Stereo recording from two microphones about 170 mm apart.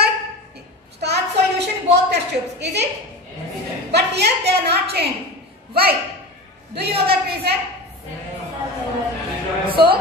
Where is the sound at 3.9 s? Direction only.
75° right (ahead or behind).